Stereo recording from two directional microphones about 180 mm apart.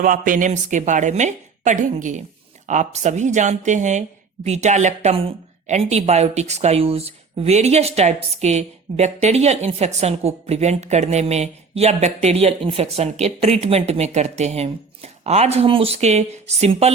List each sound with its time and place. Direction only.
0.0 s a woman's voice: 50° right (ahead or behind)